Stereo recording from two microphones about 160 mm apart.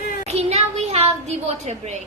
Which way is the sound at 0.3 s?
45° right (ahead or behind).